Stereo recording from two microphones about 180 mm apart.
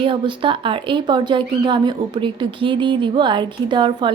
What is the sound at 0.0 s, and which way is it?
A woman's voice, 30° right (ahead or behind).